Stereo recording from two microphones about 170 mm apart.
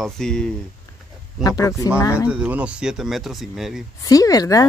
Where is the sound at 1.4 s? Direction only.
20° left (ahead or behind).